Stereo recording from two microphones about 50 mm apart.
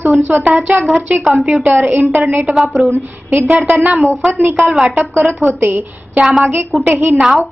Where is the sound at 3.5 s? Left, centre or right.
Right.